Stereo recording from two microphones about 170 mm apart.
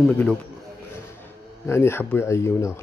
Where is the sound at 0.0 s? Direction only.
5° left (ahead or behind).